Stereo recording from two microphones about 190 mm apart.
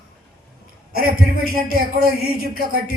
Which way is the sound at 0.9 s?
50° right (ahead or behind).